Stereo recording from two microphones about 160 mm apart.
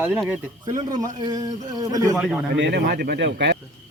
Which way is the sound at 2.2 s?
Centre (ahead or behind).